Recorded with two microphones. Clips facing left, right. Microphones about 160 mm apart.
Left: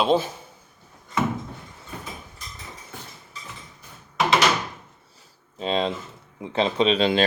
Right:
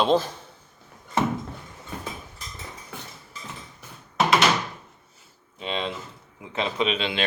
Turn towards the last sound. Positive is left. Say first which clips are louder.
# left 6 dB
turn(degrees=40)  # may be behind; listen again after turning